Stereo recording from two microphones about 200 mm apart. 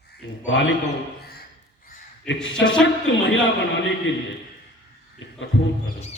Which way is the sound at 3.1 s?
75° left (ahead or behind).